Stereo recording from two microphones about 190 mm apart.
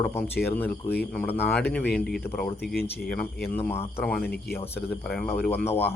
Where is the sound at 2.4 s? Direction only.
55° left (ahead or behind).